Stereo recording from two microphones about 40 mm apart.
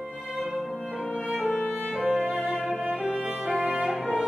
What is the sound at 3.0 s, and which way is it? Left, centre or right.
Music, centre.